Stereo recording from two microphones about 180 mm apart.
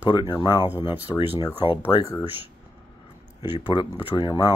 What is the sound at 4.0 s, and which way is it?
Speech, 25° left (ahead or behind).